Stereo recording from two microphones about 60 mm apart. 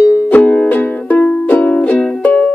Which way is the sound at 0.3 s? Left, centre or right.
Left.